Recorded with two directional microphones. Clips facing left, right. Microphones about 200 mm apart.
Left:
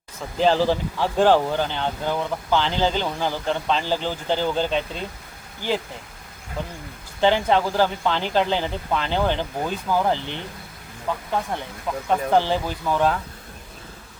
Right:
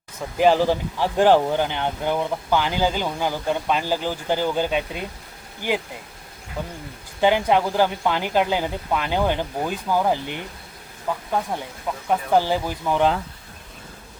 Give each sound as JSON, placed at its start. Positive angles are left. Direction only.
{"t": 0.3, "sound": "speech", "side_deg": -15}
{"t": 7.2, "sound": "speech", "side_deg": -10}